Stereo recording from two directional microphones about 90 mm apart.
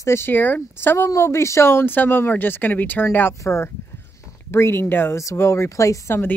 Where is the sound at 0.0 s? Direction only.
30° left (ahead or behind).